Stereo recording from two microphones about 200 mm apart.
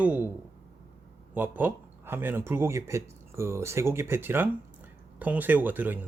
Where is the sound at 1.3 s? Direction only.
10° right (ahead or behind).